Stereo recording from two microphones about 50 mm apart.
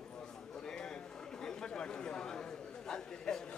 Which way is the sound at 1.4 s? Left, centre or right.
Centre.